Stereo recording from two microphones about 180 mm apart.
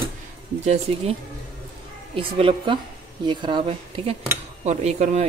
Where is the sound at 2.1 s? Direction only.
30° right (ahead or behind).